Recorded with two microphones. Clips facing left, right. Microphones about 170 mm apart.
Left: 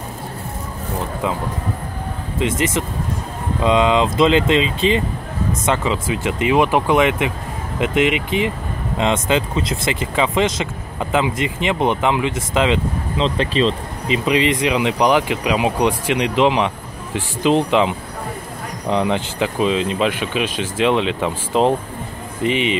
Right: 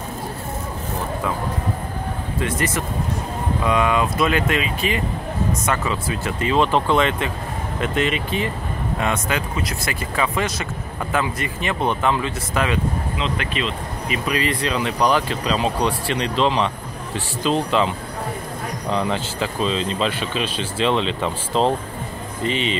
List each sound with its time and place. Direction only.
2.3 s speech: 20° left (ahead or behind)
13.2 s speech: 30° left (ahead or behind); by 22.8 s 15° left (ahead or behind)